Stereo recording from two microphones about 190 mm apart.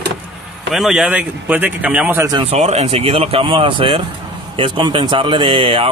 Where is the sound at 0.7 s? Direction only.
Centre (ahead or behind).